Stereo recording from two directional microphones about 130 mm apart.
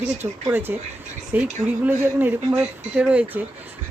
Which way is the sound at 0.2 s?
15° right (ahead or behind).